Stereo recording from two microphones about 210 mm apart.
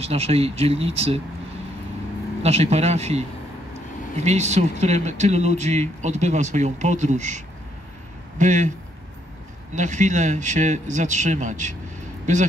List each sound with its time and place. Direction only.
0.0 s speech: 30° right (ahead or behind)
2.4 s speech: 30° right (ahead or behind)
9.8 s speech: 35° right (ahead or behind)